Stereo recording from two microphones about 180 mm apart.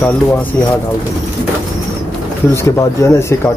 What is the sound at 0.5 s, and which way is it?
Speech, 10° left (ahead or behind).